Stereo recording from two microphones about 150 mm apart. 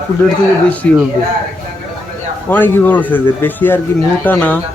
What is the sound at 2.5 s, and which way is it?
Speech, 15° left (ahead or behind).